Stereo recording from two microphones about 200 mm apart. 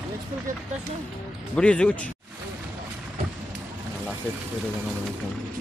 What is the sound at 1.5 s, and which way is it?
Speech, 5° left (ahead or behind).